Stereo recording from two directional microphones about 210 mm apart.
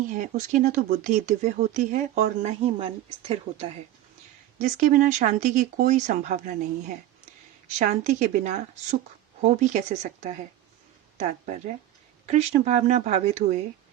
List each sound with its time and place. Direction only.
0.1 s speech: 40° right (ahead or behind)
4.6 s speech: 40° right (ahead or behind)